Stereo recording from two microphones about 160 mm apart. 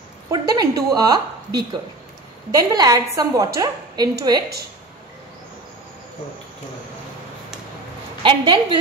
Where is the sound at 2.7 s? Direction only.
20° right (ahead or behind).